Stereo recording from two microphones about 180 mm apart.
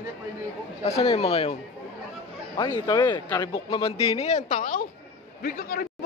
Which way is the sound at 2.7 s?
25° left (ahead or behind).